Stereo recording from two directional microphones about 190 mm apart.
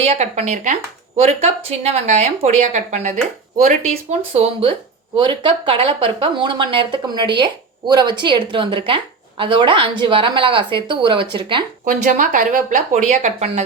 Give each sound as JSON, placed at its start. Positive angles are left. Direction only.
{"t": 0.0, "sound": "speech", "side_deg": -35}
{"t": 4.4, "sound": "speech", "side_deg": -30}
{"t": 11.9, "sound": "speech", "side_deg": -40}